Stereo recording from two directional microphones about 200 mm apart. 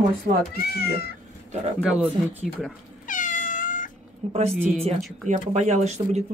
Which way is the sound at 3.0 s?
40° left (ahead or behind).